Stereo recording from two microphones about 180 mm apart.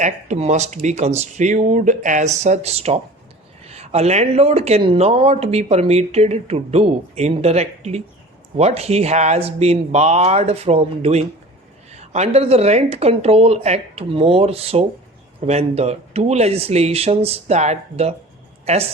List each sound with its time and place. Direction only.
0.0 s speech: 40° right (ahead or behind)